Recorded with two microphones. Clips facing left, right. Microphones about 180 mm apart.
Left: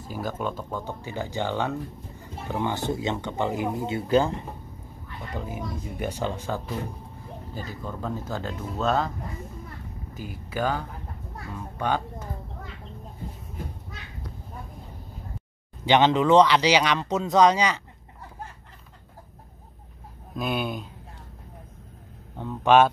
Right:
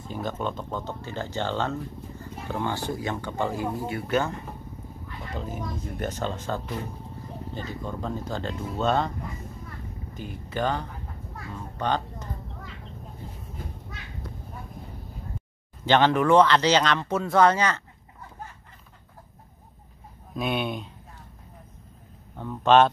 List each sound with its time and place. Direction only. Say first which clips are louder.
0.0 s speech: even; 5° left (ahead or behind); by 4.5 s 30° left (ahead or behind)
5.3 s speech: even; 10° left (ahead or behind)
10.1 s speech: even; 5° left (ahead or behind)
11.7 s a sound: even; 10° left (ahead or behind)
15.8 s speech: left 1 dB; 15° left (ahead or behind)
20.3 s speech: even; centre (ahead or behind)
22.4 s speech: even; 15° left (ahead or behind)